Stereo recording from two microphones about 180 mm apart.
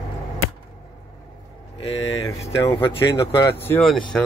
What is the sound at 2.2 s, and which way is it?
Speech, 15° left (ahead or behind).